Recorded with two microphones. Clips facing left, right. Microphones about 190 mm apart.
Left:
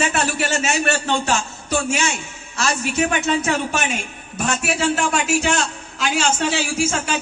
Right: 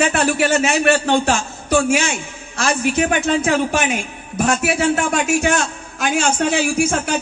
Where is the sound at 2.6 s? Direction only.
50° right (ahead or behind).